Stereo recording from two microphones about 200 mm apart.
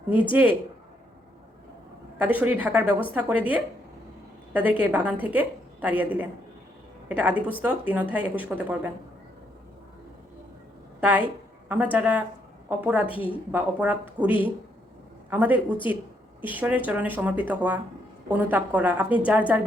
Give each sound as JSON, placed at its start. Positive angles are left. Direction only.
{"t": 2.2, "sound": "a woman's voice", "side_deg": -10}
{"t": 11.0, "sound": "a woman's voice", "side_deg": -10}
{"t": 13.1, "sound": "a woman's voice", "side_deg": 25}
{"t": 13.5, "sound": "a woman's voice", "side_deg": -10}